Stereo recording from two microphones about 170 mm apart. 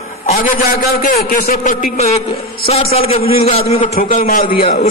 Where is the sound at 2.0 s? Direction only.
40° left (ahead or behind).